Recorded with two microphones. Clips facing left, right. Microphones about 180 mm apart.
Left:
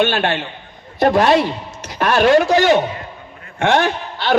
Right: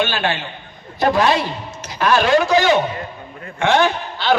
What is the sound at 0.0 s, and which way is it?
A man's voice, 55° left (ahead or behind).